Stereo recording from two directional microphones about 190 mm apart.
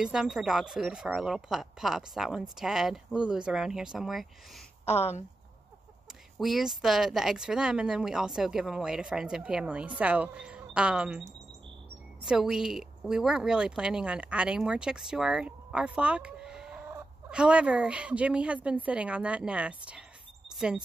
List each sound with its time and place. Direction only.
0.0 s a woman's voice: 5° right (ahead or behind)
4.8 s speech: 35° left (ahead or behind)
6.3 s a woman's voice: centre (ahead or behind)